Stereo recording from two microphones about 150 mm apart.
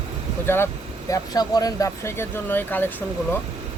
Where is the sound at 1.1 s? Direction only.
25° left (ahead or behind).